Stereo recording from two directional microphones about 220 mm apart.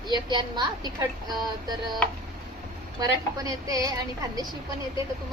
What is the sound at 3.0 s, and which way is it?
Speech, 15° right (ahead or behind).